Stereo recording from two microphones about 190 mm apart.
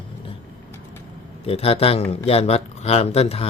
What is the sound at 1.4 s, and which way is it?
Speech, 30° left (ahead or behind).